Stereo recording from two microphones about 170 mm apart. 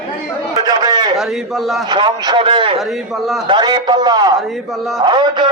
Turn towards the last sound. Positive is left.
turn(degrees=-25)  # may be behind; listen again after turning